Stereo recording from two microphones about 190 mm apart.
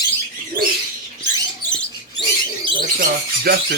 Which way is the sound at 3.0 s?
55° right (ahead or behind).